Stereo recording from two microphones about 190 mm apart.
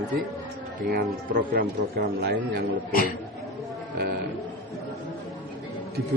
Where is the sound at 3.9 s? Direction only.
55° right (ahead or behind).